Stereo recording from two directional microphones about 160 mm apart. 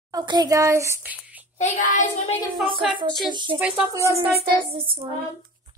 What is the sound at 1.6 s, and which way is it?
Child singing, 50° left (ahead or behind).